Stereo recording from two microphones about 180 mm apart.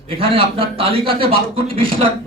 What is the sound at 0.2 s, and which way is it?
A man's voice, 30° right (ahead or behind).